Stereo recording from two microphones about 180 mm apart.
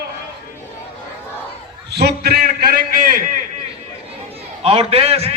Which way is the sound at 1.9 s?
60° right (ahead or behind).